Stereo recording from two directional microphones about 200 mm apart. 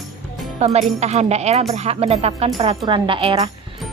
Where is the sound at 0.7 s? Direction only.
35° right (ahead or behind).